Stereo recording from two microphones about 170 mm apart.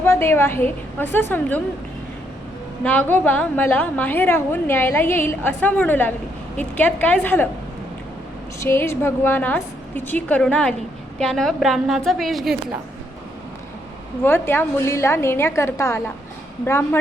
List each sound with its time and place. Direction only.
0.0 s a woman's voice: 15° left (ahead or behind)
2.8 s a woman's voice: 10° left (ahead or behind)
8.6 s a woman's voice: 15° left (ahead or behind); by 12.5 s centre (ahead or behind)
14.3 s a woman's voice: 15° left (ahead or behind)